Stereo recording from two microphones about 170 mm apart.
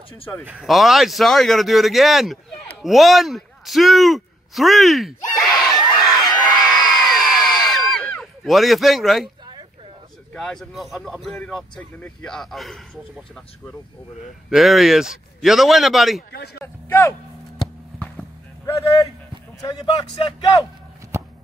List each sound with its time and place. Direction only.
0.5 s a man's voice: centre (ahead or behind)
5.3 s crowd: centre (ahead or behind)
10.3 s speech: 5° left (ahead or behind)
14.5 s speech: centre (ahead or behind)
16.6 s a sound: 10° left (ahead or behind)
18.7 s speech: 20° left (ahead or behind)